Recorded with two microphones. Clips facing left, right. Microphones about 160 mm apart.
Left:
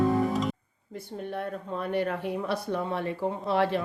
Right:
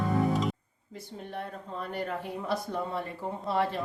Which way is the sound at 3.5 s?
80° left.